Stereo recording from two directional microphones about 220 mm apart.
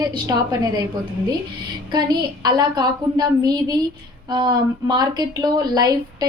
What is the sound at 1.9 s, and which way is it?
A woman's voice, 20° right (ahead or behind).